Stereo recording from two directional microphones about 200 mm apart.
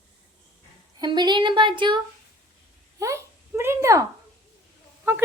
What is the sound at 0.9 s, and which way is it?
Speech, 20° right (ahead or behind).